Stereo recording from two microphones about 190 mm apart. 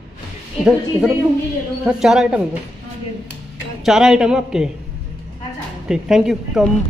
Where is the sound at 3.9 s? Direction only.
Centre (ahead or behind).